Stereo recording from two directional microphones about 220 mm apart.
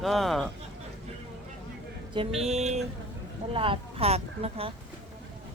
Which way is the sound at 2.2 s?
30° right (ahead or behind).